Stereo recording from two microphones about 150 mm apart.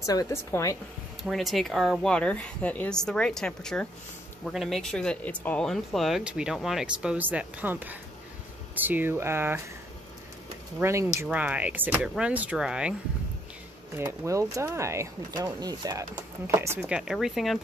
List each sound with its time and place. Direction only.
0.0 s a woman's voice: 25° left (ahead or behind)
1.2 s speech: centre (ahead or behind); by 9.6 s 15° right (ahead or behind)
10.8 s speech: 20° right (ahead or behind)
13.9 s speech: 20° right (ahead or behind)
16.8 s speech: 5° right (ahead or behind)